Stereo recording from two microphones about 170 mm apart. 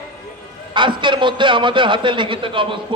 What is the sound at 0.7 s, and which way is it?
A man's voice, 30° right (ahead or behind).